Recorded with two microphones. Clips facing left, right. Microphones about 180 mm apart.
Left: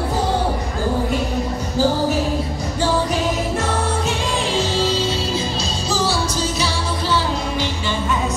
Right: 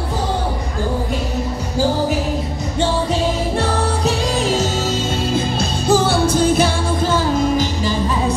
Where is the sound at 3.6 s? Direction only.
40° right (ahead or behind).